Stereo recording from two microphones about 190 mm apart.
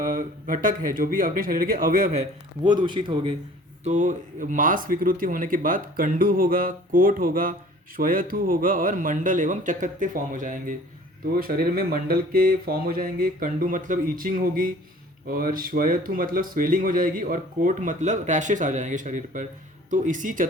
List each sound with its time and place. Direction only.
0.0 s speech: 45° right (ahead or behind)
2.6 s a man's voice: 25° right (ahead or behind)
3.8 s speech: 40° right (ahead or behind)